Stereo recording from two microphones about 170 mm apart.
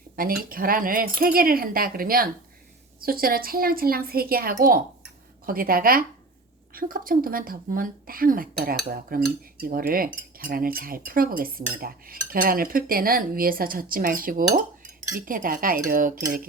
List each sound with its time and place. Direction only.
0.2 s speech: 60° right (ahead or behind)
15.3 s cutlery: 55° right (ahead or behind)